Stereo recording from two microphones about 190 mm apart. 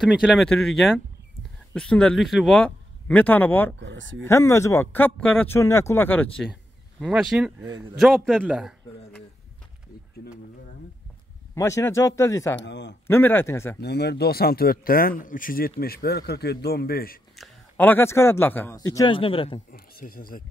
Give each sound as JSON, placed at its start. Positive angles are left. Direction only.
{"t": 0.0, "sound": "a man's voice", "side_deg": 0}
{"t": 3.8, "sound": "speech", "side_deg": -75}
{"t": 4.2, "sound": "speech", "side_deg": 15}
{"t": 6.4, "sound": "a man's voice", "side_deg": -5}
{"t": 11.5, "sound": "speech", "side_deg": 15}
{"t": 12.5, "sound": "a man's voice", "side_deg": 70}
{"t": 13.0, "sound": "speech", "side_deg": 10}
{"t": 13.7, "sound": "speech", "side_deg": 60}
{"t": 17.4, "sound": "speech", "side_deg": 10}
{"t": 19.7, "sound": "speech", "side_deg": 50}